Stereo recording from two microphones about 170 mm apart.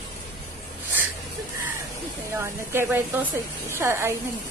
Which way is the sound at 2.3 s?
15° right (ahead or behind).